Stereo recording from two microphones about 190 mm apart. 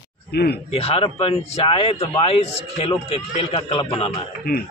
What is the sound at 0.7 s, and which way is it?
A man's voice, 30° left (ahead or behind).